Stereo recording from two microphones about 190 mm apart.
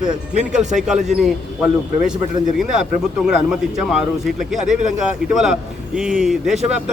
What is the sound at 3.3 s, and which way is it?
A man's voice, 5° right (ahead or behind).